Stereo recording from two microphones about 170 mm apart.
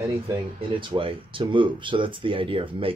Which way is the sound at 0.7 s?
30° right (ahead or behind).